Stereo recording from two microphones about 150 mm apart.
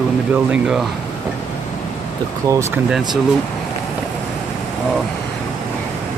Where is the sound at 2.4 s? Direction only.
20° right (ahead or behind).